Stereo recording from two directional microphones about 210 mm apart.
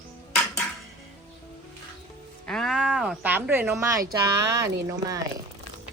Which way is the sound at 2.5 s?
Centre (ahead or behind).